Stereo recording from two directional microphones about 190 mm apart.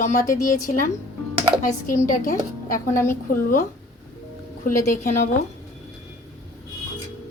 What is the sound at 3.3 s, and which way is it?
Speech, 45° left (ahead or behind).